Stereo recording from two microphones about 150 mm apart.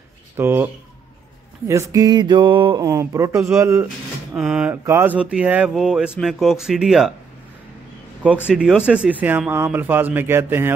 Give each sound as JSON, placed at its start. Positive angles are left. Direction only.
{"t": 0.4, "sound": "speech", "side_deg": -15}
{"t": 1.7, "sound": "a sound", "side_deg": -20}
{"t": 4.4, "sound": "speech", "side_deg": -5}
{"t": 8.5, "sound": "speech", "side_deg": -5}